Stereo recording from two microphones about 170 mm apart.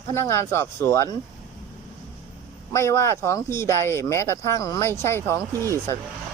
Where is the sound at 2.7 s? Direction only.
15° left (ahead or behind).